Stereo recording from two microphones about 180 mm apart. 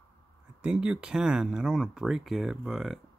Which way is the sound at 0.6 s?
5° right (ahead or behind).